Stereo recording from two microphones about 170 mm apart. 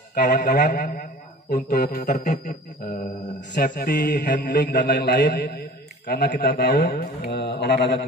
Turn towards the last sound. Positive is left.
turn(degrees=90)